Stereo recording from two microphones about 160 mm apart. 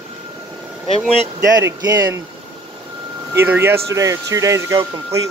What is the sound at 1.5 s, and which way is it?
Speech, 25° right (ahead or behind).